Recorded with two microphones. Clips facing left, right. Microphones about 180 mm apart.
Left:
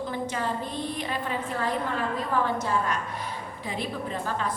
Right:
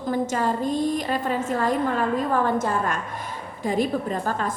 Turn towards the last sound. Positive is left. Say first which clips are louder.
# right 4 dB
turn(degrees=-45)  # may be behind; listen again after turning